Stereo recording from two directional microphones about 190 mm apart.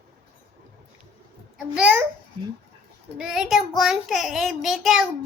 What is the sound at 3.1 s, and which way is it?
A child's voice, 5° right (ahead or behind).